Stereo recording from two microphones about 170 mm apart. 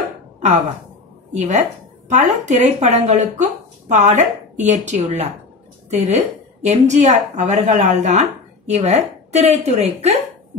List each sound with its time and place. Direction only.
1.3 s a woman's voice: 45° right (ahead or behind)